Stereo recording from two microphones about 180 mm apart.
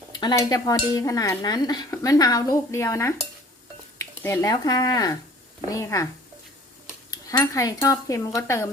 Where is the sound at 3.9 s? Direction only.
15° left (ahead or behind).